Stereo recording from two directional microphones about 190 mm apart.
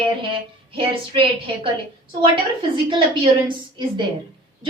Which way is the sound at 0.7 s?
25° right (ahead or behind).